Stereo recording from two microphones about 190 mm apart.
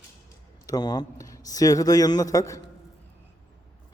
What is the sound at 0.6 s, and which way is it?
Speech, 20° left (ahead or behind).